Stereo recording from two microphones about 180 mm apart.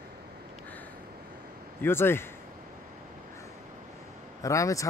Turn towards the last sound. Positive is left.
turn(degrees=15)  # may be behind; listen again after turning